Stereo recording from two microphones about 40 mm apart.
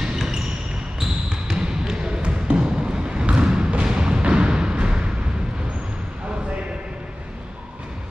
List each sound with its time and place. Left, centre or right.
0.0 s basketball bounce: centre
1.6 s basketball bounce: centre
2.2 s a sound: right
3.4 s music: centre